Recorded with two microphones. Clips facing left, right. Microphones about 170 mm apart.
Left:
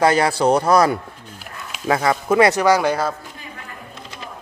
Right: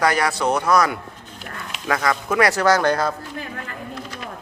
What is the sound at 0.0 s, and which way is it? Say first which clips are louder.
Speech: left 4 dB; 25° left (ahead or behind).